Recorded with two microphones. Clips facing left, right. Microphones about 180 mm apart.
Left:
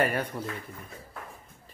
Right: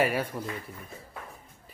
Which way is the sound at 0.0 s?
5° right (ahead or behind).